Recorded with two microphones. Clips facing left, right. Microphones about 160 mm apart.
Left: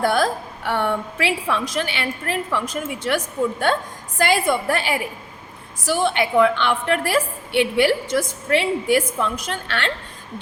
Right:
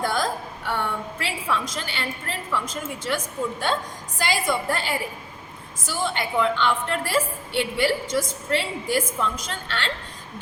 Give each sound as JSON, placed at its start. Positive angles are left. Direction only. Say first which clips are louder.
{"t": 0.0, "sound": "a woman's voice", "louder": "left 5 dB", "side_deg": 65}